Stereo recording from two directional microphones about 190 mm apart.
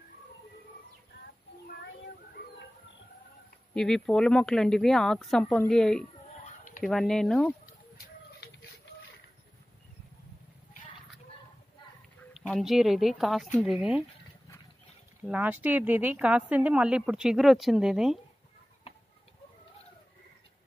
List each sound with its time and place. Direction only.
3.7 s speech: 5° left (ahead or behind)
6.4 s a sound: 40° left (ahead or behind)
6.8 s speech: centre (ahead or behind)
8.4 s a sound: 55° left (ahead or behind)
12.2 s speech: centre (ahead or behind)
15.2 s speech: 5° right (ahead or behind)